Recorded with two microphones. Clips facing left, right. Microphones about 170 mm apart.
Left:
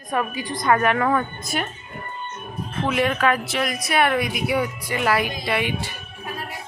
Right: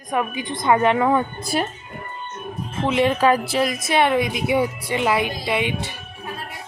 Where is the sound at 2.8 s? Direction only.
25° right (ahead or behind).